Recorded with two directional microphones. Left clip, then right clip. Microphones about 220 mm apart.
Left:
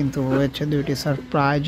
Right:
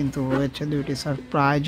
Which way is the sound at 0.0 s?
Centre (ahead or behind).